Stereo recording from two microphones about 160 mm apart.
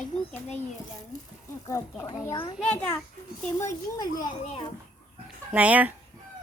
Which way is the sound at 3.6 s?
25° left (ahead or behind).